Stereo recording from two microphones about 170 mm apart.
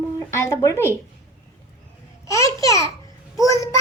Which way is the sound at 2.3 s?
20° left (ahead or behind).